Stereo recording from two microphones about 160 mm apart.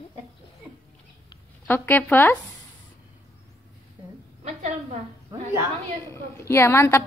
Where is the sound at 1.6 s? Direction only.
10° left (ahead or behind).